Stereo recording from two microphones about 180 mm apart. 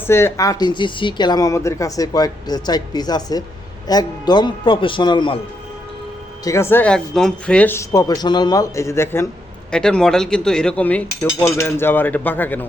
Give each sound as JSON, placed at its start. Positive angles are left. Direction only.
{"t": 0.1, "sound": "speech", "side_deg": 15}
{"t": 6.4, "sound": "speech", "side_deg": 15}
{"t": 9.7, "sound": "speech", "side_deg": 5}